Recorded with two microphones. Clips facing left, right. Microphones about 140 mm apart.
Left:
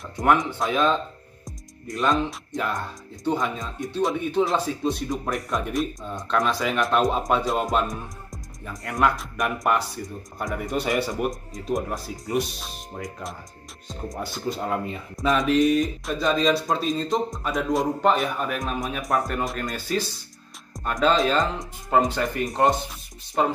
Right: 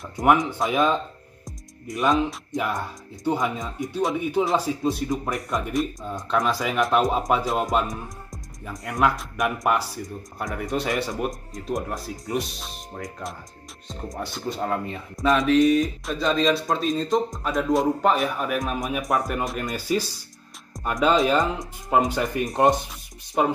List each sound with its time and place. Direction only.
0.2 s speech: centre (ahead or behind)
20.7 s music: centre (ahead or behind)
21.0 s speech: 10° right (ahead or behind)